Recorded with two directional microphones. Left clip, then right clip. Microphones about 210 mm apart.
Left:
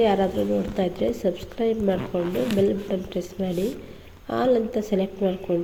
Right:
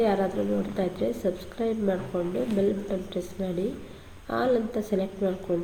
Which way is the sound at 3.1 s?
25° left (ahead or behind).